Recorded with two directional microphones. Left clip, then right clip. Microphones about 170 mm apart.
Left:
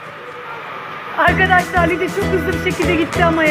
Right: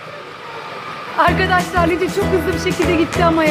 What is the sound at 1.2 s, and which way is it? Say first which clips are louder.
Music: left 5 dB; 5° right (ahead or behind).